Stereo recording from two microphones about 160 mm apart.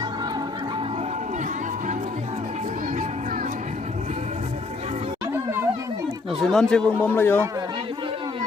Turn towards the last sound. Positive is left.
turn(degrees=15)  # may be behind; listen again after turning